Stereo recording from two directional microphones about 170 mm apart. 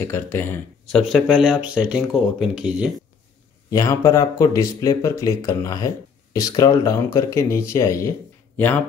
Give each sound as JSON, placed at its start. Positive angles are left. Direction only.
{"t": 0.0, "sound": "speech", "side_deg": 15}
{"t": 3.7, "sound": "speech", "side_deg": 20}